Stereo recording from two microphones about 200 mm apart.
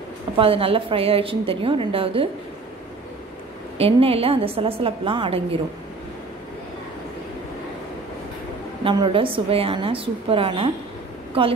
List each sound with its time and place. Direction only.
0.4 s a woman's voice: 25° right (ahead or behind)
3.7 s a woman's voice: 30° right (ahead or behind)
8.8 s a woman's voice: 25° right (ahead or behind)